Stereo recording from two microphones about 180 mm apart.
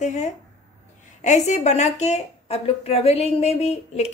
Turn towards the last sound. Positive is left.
turn(degrees=35)  # may be behind; listen again after turning